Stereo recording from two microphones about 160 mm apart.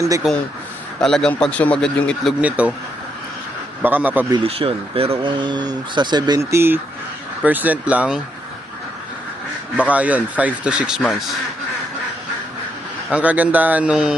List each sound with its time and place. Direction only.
0.2 s speech: 5° right (ahead or behind)
2.4 s speech: 10° right (ahead or behind)
3.8 s speech: 10° right (ahead or behind)
4.4 s speech: 35° right (ahead or behind); by 8.2 s 5° right (ahead or behind)
9.7 s speech: 10° right (ahead or behind)
13.1 s speech: 10° right (ahead or behind)